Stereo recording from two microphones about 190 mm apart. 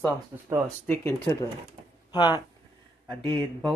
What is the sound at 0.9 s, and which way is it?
Speech, 15° left (ahead or behind).